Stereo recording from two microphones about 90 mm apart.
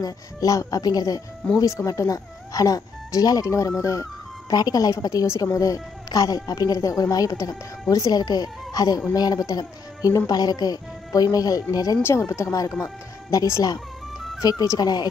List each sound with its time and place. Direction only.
0.0 s a woman's voice: 40° left (ahead or behind)
12.0 s a woman's voice: 25° left (ahead or behind); by 15.0 s 45° left (ahead or behind)